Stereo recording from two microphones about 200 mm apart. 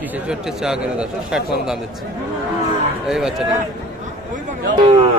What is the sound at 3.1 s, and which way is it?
Speech, centre (ahead or behind).